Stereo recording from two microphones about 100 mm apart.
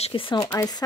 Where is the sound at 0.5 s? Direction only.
40° left (ahead or behind).